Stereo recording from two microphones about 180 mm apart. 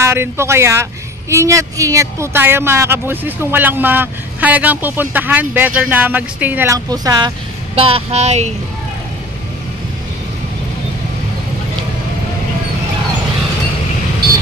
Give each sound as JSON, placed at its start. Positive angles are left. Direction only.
{"t": 0.0, "sound": "speech", "side_deg": -15}